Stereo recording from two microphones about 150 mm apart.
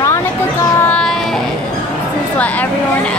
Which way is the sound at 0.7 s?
10° left (ahead or behind).